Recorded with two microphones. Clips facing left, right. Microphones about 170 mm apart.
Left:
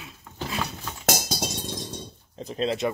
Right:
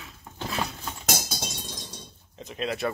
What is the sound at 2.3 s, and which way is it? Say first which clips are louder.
Speech: left 4 dB; 35° left (ahead or behind).